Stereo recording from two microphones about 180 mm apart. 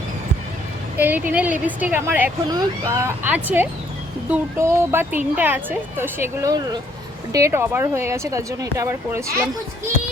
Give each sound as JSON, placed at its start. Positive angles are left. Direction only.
{"t": 0.9, "sound": "speech", "side_deg": -10}